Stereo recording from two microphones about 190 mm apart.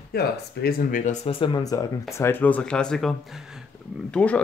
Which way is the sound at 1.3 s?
25° left (ahead or behind).